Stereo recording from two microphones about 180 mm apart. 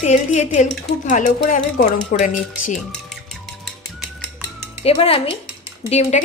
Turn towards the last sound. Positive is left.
turn(degrees=35)  # may be behind; listen again after turning